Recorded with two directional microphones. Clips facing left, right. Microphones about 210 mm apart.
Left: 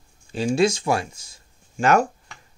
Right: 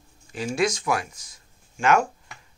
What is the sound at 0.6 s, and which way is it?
Speech, 30° left (ahead or behind).